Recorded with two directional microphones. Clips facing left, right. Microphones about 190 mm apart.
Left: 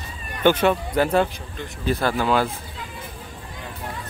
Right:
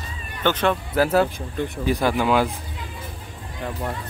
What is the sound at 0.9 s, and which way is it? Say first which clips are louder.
Speech: right 1 dB; 5° right (ahead or behind).